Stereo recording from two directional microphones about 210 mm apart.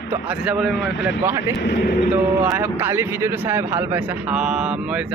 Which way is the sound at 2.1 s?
10° right (ahead or behind).